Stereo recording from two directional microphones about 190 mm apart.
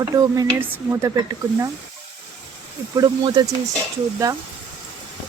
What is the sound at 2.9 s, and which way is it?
Speech, 20° right (ahead or behind).